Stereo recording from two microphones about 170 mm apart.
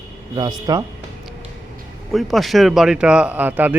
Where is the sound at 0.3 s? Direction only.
25° right (ahead or behind).